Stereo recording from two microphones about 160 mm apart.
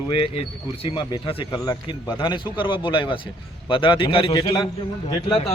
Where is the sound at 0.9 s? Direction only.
35° left (ahead or behind).